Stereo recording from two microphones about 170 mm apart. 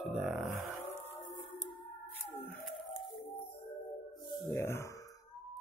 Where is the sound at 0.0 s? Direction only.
Centre (ahead or behind).